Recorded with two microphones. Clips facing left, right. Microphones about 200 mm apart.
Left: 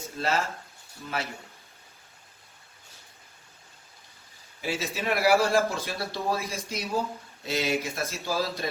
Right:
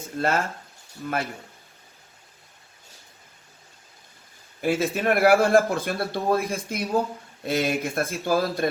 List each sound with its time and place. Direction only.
0.2 s a man's voice: 50° right (ahead or behind)
4.6 s a man's voice: 50° right (ahead or behind)